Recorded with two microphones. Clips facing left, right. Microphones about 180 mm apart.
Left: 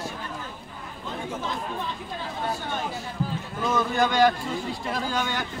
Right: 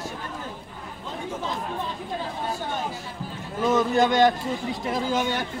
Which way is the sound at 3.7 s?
20° right (ahead or behind).